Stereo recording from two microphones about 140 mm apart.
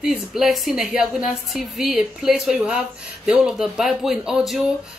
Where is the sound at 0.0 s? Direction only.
5° right (ahead or behind).